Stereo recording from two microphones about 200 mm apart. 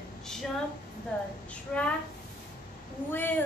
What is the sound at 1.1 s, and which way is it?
Speech, 5° left (ahead or behind).